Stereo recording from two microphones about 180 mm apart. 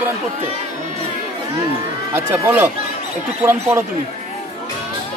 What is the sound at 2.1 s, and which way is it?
Speech, 15° right (ahead or behind).